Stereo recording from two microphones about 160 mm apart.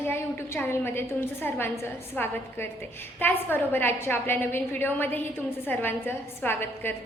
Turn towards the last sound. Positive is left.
turn(degrees=15)  # may be behind; listen again after turning